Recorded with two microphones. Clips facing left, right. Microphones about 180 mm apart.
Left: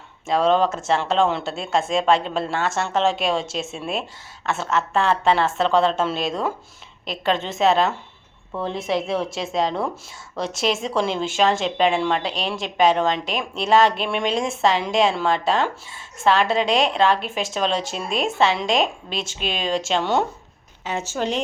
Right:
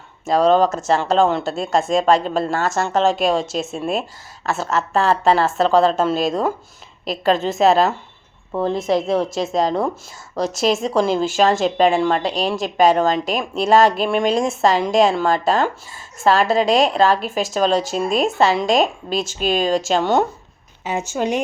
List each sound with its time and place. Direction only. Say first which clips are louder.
0.3 s a woman's voice: right 4 dB; 40° right (ahead or behind)
20.8 s a woman's voice: right 3 dB; 15° right (ahead or behind)